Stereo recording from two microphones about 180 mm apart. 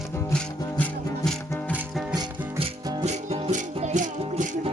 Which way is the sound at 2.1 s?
20° right (ahead or behind).